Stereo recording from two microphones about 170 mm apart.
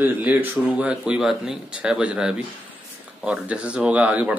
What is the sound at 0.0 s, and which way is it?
Speech, 10° right (ahead or behind).